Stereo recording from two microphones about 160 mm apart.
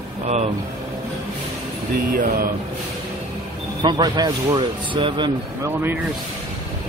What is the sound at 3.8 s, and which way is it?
Speech, 25° right (ahead or behind).